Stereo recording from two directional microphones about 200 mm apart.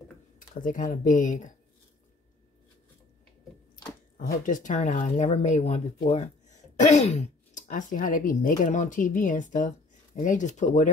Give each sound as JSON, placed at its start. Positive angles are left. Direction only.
{"t": 0.4, "sound": "speech", "side_deg": 40}
{"t": 4.3, "sound": "speech", "side_deg": 40}